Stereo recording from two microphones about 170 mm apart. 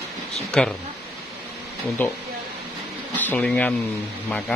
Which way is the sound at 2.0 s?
10° left (ahead or behind).